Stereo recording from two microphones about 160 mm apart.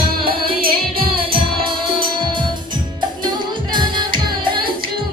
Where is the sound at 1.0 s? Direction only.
35° right (ahead or behind).